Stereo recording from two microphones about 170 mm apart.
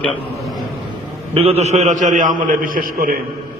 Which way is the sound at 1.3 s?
35° right (ahead or behind).